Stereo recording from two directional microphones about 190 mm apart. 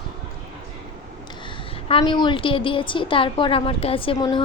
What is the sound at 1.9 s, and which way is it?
A woman's voice, 25° left (ahead or behind).